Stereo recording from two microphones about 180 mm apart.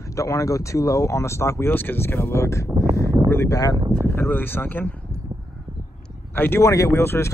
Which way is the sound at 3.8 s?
25° right (ahead or behind).